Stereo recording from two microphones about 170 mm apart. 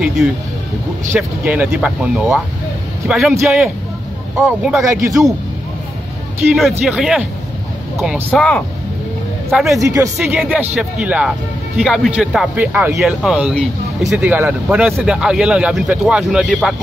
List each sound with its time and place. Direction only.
0.0 s speech: centre (ahead or behind)
6.8 s speech: centre (ahead or behind)
8.3 s speech: 5° left (ahead or behind)
9.8 s speech: 20° right (ahead or behind)
10.1 s speech: centre (ahead or behind)